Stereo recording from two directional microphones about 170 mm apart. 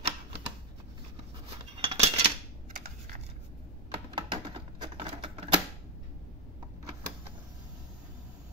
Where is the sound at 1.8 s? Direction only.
35° right (ahead or behind).